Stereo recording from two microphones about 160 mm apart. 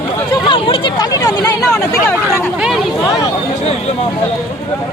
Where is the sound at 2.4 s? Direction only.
5° right (ahead or behind).